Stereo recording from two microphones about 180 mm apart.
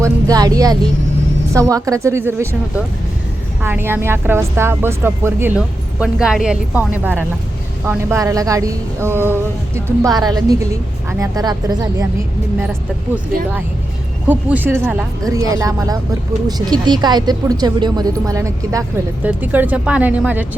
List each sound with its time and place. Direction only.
0.0 s a woman's voice: 20° right (ahead or behind)
14.3 s a woman's voice: 10° right (ahead or behind)